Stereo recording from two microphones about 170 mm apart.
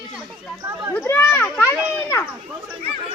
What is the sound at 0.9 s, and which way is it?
Speech, 10° left (ahead or behind).